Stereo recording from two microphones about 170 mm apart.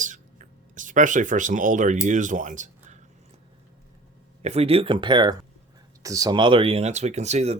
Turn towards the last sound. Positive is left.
turn(degrees=-40)  # may be behind; listen again after turning